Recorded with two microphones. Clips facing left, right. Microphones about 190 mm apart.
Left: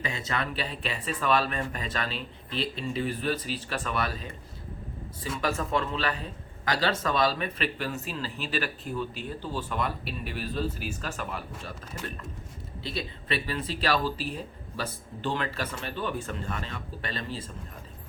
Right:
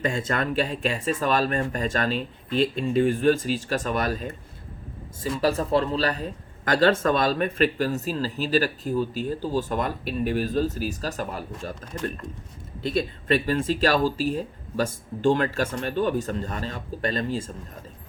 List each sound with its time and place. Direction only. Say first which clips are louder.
0.0 s speech: right 6 dB; 50° right (ahead or behind)
5.4 s speech: right 6 dB; 35° right (ahead or behind)